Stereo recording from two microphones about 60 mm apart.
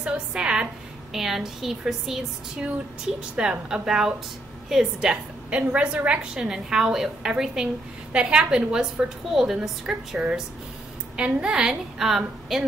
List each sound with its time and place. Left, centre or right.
0.0 s a woman's voice: centre
3.2 s a woman's voice: centre